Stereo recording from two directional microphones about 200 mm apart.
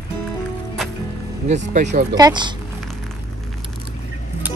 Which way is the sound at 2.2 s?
20° right (ahead or behind).